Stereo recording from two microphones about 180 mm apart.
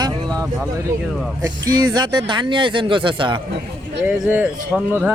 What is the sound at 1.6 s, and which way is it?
Speech, 20° right (ahead or behind).